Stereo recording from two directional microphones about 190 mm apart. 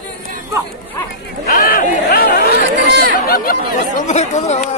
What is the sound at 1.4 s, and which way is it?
Speech, 50° left (ahead or behind).